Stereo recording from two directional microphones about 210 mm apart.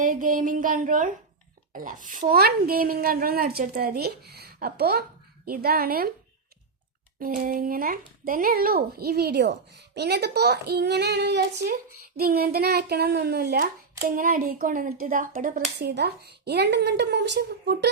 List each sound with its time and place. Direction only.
0.0 s speech: 40° right (ahead or behind)
7.2 s speech: 40° right (ahead or behind)